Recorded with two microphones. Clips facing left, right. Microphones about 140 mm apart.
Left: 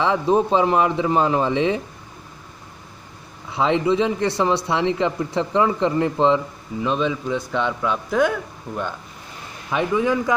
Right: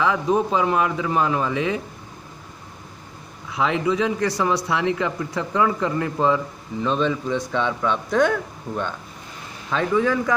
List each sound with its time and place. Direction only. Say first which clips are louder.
0.0 s speech: left 2 dB; 30° left (ahead or behind)
3.4 s speech: left 3 dB; 30° left (ahead or behind)
6.8 s a man's voice: even; 10° left (ahead or behind)
9.7 s a man's voice: even; 15° left (ahead or behind)